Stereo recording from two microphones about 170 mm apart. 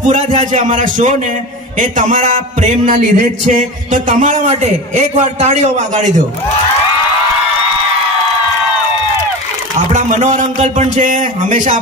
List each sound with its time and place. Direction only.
0.0 s a man's voice: 45° right (ahead or behind)
9.9 s a man's voice: 45° right (ahead or behind)